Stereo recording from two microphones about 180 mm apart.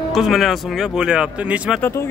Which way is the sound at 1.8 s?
15° left (ahead or behind).